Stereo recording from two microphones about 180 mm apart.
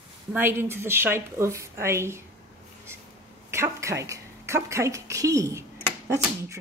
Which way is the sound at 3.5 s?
15° right (ahead or behind).